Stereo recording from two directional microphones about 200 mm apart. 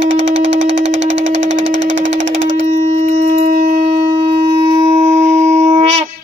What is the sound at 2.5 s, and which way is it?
Shofar, 35° right (ahead or behind).